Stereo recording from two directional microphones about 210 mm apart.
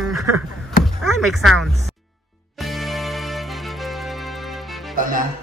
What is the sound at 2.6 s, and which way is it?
Music, centre (ahead or behind).